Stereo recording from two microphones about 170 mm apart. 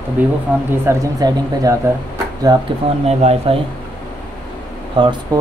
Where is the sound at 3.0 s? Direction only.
40° right (ahead or behind).